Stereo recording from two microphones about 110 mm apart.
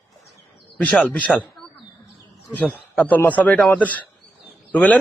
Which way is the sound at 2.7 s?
10° left (ahead or behind).